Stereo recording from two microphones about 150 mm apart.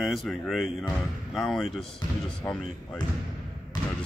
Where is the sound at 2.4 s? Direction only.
15° left (ahead or behind).